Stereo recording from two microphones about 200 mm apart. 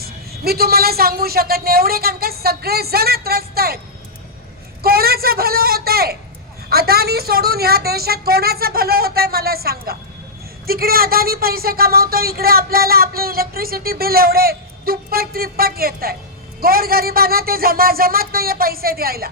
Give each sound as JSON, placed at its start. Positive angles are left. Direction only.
{"t": 0.0, "sound": "speech", "side_deg": -50}
{"t": 4.8, "sound": "speech", "side_deg": -50}